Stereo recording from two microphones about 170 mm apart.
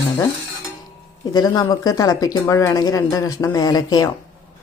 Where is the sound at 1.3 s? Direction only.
25° left (ahead or behind).